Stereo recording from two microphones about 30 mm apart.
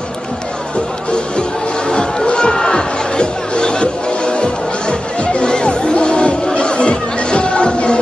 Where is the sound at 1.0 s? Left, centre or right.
Left.